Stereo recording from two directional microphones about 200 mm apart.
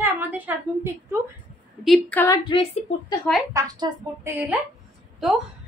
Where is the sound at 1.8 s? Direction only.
10° left (ahead or behind).